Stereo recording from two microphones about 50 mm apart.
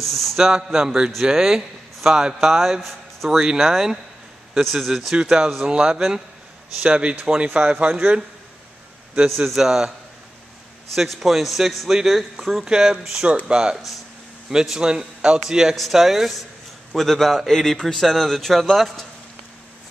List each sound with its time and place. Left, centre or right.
0.0 s a man's voice: centre
0.4 s speech: centre
5.1 s speech: centre
6.8 s speech: right
9.3 s speech: centre
11.0 s speech: centre
16.9 s speech: centre